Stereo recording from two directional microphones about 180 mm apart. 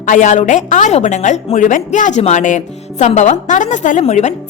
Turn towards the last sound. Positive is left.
turn(degrees=40)  # may be behind; listen again after turning